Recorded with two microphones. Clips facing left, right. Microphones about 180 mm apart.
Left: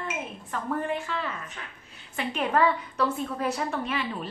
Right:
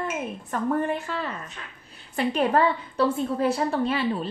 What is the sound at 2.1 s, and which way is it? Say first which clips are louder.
A woman's voice: right 3 dB; 35° right (ahead or behind).